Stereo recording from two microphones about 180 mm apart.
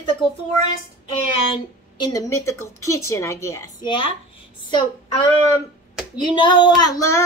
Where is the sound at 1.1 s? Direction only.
25° left (ahead or behind).